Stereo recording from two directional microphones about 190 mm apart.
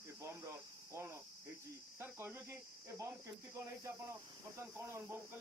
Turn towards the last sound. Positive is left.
turn(degrees=-15)  # may be behind; listen again after turning